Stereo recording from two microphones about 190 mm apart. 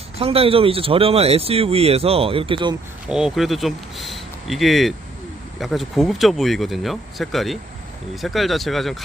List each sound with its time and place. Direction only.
0.2 s speech: 30° right (ahead or behind)
3.1 s speech: 5° right (ahead or behind)